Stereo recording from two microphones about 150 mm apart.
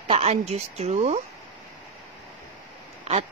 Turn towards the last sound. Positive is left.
turn(degrees=-45)  # may be behind; listen again after turning